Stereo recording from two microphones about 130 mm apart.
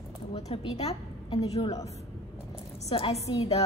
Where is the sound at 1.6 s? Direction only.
30° left (ahead or behind).